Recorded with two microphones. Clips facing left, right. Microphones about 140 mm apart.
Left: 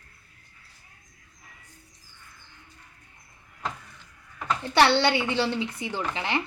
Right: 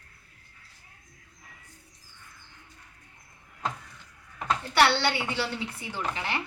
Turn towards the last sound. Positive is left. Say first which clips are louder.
# left 3 dB
turn(degrees=20)  # may be behind; listen again after turning